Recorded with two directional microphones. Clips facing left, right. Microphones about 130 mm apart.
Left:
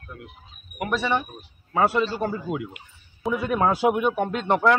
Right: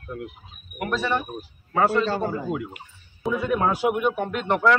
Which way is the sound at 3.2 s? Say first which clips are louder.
Even; centre (ahead or behind).